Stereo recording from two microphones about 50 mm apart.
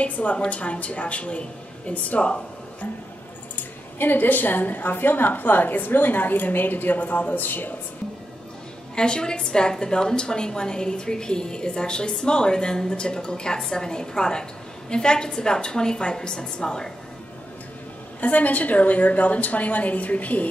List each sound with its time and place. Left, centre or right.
0.0 s a woman's voice: left
3.5 s a woman's voice: left
8.9 s a woman's voice: centre
18.2 s a woman's voice: left